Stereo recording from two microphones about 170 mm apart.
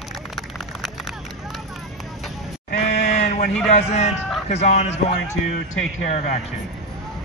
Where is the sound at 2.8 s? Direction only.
45° left (ahead or behind).